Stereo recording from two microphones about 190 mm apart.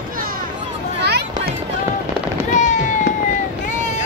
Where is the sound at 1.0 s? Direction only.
60° right (ahead or behind).